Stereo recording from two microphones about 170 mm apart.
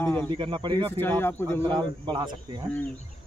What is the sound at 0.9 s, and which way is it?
Speech, 10° left (ahead or behind).